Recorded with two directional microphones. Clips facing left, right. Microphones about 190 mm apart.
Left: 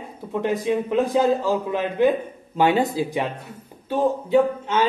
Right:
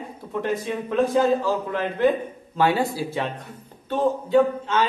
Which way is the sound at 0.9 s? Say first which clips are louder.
Right 2 dB; 15° left (ahead or behind).